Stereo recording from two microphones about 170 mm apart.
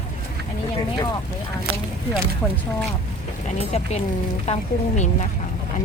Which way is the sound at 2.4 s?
10° left (ahead or behind).